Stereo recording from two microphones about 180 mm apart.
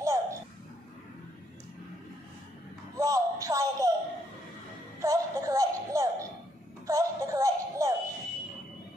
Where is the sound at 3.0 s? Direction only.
20° right (ahead or behind).